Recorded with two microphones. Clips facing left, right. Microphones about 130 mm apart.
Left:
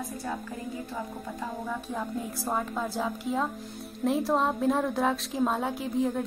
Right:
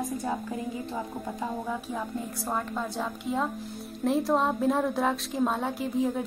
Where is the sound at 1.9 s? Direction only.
Centre (ahead or behind).